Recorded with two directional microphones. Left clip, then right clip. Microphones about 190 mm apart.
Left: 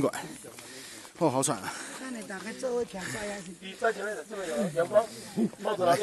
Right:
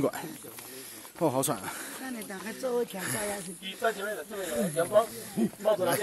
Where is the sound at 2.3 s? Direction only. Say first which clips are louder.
Right 1 dB; 5° left (ahead or behind).